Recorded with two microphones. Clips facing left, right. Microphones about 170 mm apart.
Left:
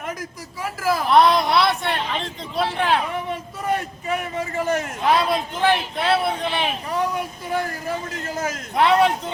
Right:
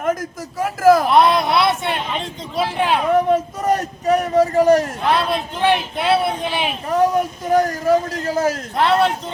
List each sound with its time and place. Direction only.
0.0 s a man's voice: 45° right (ahead or behind)
1.0 s a sound: centre (ahead or behind)
3.6 s a man's voice: 40° right (ahead or behind)
5.1 s a man's voice: 10° left (ahead or behind)
5.6 s speech: centre (ahead or behind)
6.9 s a man's voice: 40° right (ahead or behind)
8.7 s a man's voice: 15° left (ahead or behind)